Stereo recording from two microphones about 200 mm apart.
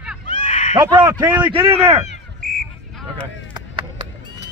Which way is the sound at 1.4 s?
30° right (ahead or behind).